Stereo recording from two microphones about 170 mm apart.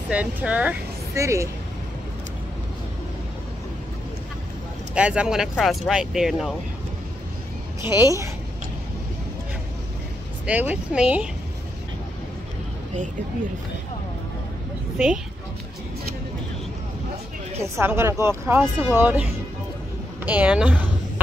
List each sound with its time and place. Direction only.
0.1 s speech: 10° right (ahead or behind)
4.9 s speech: 5° right (ahead or behind)
7.8 s speech: 25° left (ahead or behind)
10.4 s speech: 10° right (ahead or behind)
17.6 s speech: 15° right (ahead or behind)
20.2 s speech: 10° right (ahead or behind)